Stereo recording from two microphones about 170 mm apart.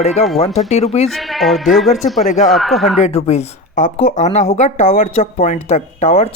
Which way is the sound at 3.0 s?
40° left (ahead or behind).